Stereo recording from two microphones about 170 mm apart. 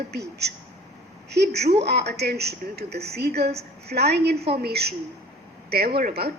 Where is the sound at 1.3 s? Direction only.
75° right (ahead or behind).